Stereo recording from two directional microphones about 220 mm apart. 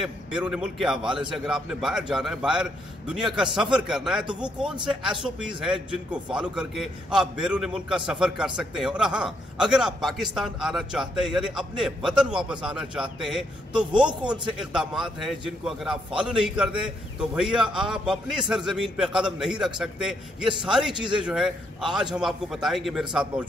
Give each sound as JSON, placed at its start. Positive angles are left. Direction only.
{"t": 0.0, "sound": "a man's voice", "side_deg": -5}